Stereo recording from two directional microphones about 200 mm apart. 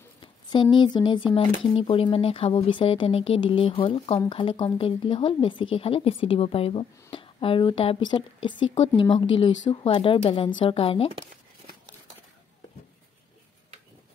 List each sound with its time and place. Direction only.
0.2 s speech: 25° left (ahead or behind)